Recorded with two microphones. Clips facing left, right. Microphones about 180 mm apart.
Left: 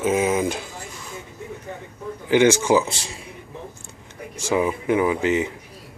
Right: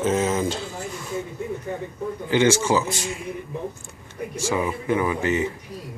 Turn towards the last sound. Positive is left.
turn(degrees=15)  # may be behind; listen again after turning